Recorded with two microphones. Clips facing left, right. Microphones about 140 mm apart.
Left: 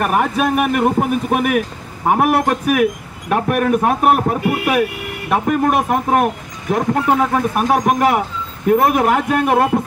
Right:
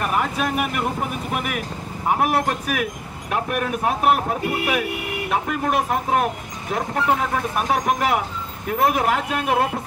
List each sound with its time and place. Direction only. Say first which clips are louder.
0.0 s speech: left 6 dB; 60° left (ahead or behind)